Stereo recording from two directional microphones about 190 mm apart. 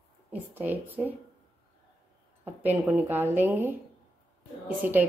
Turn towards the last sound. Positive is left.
turn(degrees=-10)  # may be behind; listen again after turning